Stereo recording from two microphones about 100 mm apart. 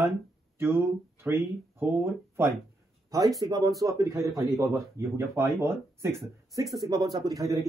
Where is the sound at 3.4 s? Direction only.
40° right (ahead or behind).